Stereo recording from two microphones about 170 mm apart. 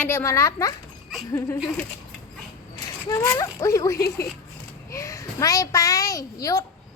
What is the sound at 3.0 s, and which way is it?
A child's voice, 20° left (ahead or behind).